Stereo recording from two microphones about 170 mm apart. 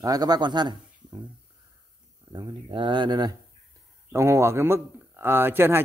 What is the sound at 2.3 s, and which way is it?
Speech, 25° right (ahead or behind).